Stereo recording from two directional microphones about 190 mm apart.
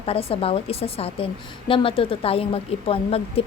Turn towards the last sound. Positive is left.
turn(degrees=30)  # may be behind; listen again after turning